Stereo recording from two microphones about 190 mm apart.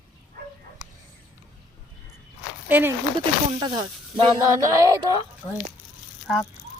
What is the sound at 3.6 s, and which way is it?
Speech, 20° right (ahead or behind).